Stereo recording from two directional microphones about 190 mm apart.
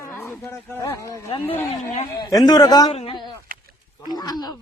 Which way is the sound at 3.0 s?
25° left (ahead or behind).